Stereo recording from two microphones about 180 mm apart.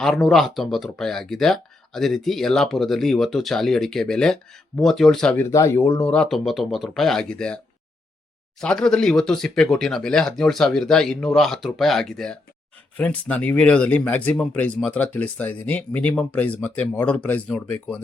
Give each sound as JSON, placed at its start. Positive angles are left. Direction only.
{"t": 0.0, "sound": "speech", "side_deg": 0}
{"t": 5.5, "sound": "speech", "side_deg": 15}
{"t": 8.6, "sound": "speech", "side_deg": 5}